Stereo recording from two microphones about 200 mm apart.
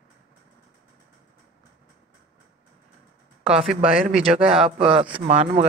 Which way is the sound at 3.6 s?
Centre (ahead or behind).